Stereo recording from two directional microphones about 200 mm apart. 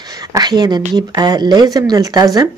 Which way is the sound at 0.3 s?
20° right (ahead or behind).